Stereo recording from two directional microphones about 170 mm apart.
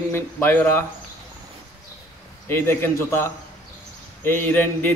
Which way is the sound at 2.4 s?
10° left (ahead or behind).